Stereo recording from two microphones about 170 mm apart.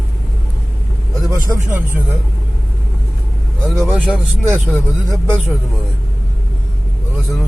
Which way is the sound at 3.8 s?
5° right (ahead or behind).